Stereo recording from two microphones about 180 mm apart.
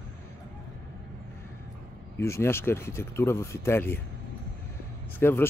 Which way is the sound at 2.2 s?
15° left (ahead or behind).